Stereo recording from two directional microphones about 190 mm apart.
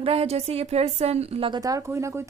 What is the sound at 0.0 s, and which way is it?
A woman's voice, 30° right (ahead or behind).